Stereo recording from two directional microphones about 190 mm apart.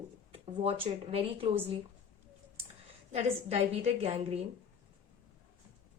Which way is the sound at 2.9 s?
30° right (ahead or behind).